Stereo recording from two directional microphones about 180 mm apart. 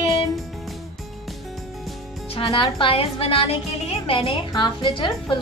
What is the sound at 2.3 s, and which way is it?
A woman's voice, 30° left (ahead or behind).